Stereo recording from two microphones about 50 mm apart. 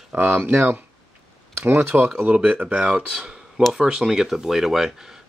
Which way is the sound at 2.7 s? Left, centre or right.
Centre.